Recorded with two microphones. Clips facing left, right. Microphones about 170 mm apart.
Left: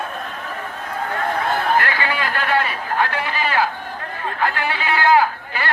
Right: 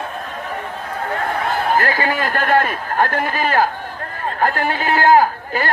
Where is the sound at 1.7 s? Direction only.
40° right (ahead or behind).